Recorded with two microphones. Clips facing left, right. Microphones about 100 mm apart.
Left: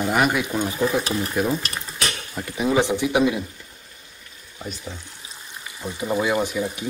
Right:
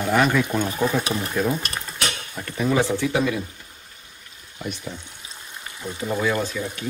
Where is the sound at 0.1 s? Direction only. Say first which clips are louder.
Right 3 dB; 10° left (ahead or behind).